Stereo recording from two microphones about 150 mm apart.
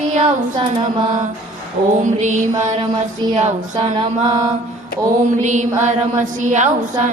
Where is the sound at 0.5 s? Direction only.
30° right (ahead or behind).